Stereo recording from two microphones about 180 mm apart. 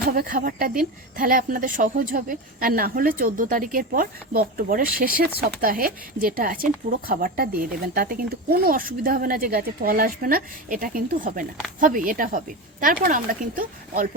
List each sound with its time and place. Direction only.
0.2 s speech: 50° right (ahead or behind)